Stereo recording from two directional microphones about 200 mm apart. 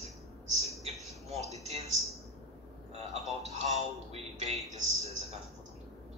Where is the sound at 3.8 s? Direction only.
30° right (ahead or behind).